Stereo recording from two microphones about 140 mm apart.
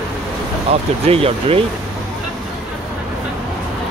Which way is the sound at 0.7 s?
45° right (ahead or behind).